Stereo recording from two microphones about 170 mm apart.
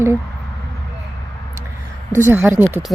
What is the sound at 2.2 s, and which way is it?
Speech, 15° right (ahead or behind).